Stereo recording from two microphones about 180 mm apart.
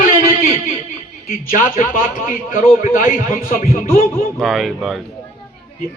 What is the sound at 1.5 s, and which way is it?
A woman's voice, 45° left (ahead or behind).